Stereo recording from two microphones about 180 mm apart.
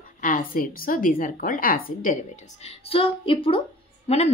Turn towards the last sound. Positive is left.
turn(degrees=35)  # may be behind; listen again after turning